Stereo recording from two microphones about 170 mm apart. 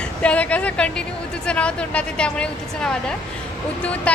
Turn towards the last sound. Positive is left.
turn(degrees=5)  # may be behind; listen again after turning